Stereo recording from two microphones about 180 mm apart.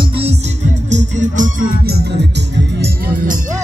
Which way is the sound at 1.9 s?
70° right (ahead or behind).